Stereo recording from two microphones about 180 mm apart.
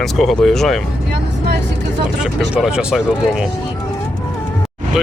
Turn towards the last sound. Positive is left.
turn(degrees=-5)  # may be behind; listen again after turning